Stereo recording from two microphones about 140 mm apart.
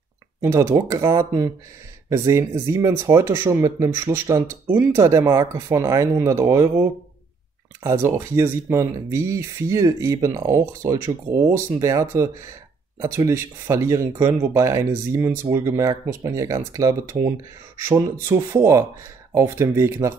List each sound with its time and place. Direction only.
0.4 s speech: 20° right (ahead or behind)
7.8 s speech: 20° right (ahead or behind)